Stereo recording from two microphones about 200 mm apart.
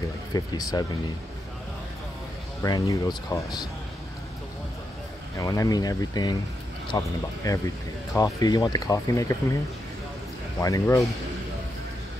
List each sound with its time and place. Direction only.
0.3 s speech: 20° left (ahead or behind)
2.6 s speech: 15° left (ahead or behind)
5.4 s speech: 15° left (ahead or behind)
10.6 s speech: 15° left (ahead or behind)